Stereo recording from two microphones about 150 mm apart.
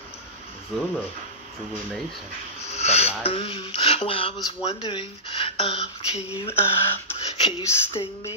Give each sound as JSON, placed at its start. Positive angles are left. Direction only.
{"t": 2.7, "sound": "a sound", "side_deg": 45}
{"t": 3.3, "sound": "speech", "side_deg": 40}
{"t": 6.6, "sound": "speech", "side_deg": 15}
{"t": 7.2, "sound": "speech", "side_deg": 45}